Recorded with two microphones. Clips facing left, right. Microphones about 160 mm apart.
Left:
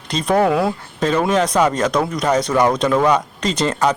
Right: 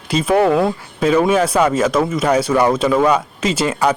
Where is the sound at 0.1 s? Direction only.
5° right (ahead or behind).